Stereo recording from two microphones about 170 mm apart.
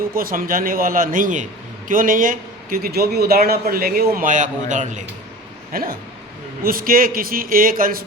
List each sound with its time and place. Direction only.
0.1 s a man's voice: 55° right (ahead or behind)
5.7 s a man's voice: 60° right (ahead or behind)